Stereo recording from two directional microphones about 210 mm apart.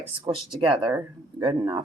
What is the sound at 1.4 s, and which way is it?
Speech, 25° right (ahead or behind).